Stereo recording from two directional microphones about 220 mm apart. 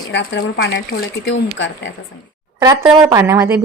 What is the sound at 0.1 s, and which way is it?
Speech, 55° left (ahead or behind).